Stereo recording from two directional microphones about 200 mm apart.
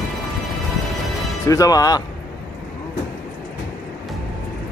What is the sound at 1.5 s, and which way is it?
Speech, 15° left (ahead or behind).